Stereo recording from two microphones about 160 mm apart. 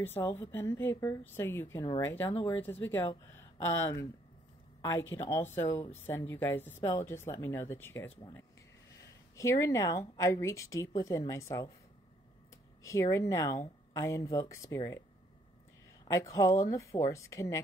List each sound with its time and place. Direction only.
0.0 s speech: 15° left (ahead or behind)
12.8 s speech: 20° left (ahead or behind)
16.1 s speech: 20° left (ahead or behind)